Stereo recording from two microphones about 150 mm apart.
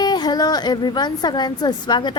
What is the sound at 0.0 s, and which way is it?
A woman's voice, 30° left (ahead or behind).